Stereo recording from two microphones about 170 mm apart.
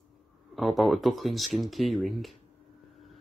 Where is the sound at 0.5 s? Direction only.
Centre (ahead or behind).